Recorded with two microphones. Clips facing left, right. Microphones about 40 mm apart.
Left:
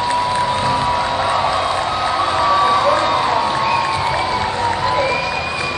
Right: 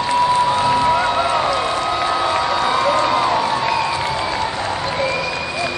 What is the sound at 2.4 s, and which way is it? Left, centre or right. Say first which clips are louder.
Crowd: left 3 dB; left.